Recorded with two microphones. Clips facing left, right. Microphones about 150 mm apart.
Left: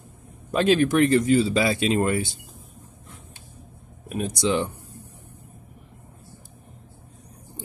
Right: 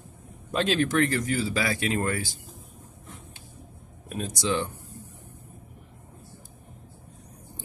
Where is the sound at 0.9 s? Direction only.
20° left (ahead or behind).